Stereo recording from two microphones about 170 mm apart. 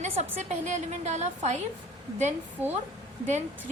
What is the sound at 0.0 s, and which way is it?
A woman's voice, 45° right (ahead or behind).